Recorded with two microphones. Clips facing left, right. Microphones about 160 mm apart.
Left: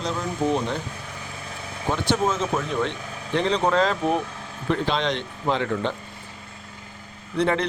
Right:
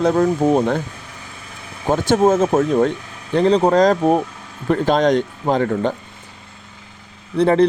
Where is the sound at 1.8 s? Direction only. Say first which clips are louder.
Right 8 dB; 45° right (ahead or behind).